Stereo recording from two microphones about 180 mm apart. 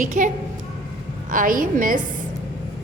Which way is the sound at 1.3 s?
50° right (ahead or behind).